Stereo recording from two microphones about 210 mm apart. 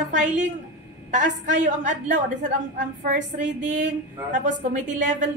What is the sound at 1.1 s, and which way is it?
Speech, 35° right (ahead or behind).